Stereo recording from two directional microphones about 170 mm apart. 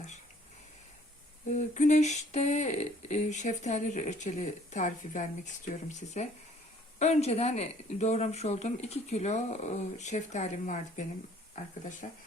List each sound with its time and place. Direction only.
1.5 s speech: 45° left (ahead or behind)
7.0 s speech: 40° left (ahead or behind)